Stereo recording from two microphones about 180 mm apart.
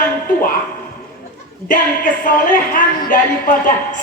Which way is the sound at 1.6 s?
50° left (ahead or behind).